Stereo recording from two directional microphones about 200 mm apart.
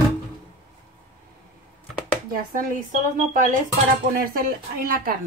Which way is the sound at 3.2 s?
40° right (ahead or behind).